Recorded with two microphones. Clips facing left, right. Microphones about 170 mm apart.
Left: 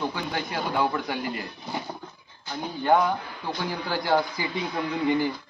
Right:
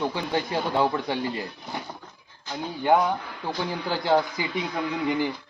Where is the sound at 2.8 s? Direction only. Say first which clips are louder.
Even; 10° right (ahead or behind).